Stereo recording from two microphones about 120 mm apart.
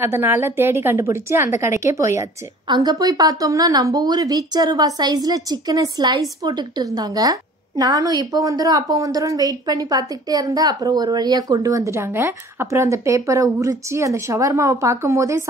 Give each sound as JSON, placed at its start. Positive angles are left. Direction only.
{"t": 0.0, "sound": "a woman's voice", "side_deg": -20}
{"t": 2.7, "sound": "a woman's voice", "side_deg": -35}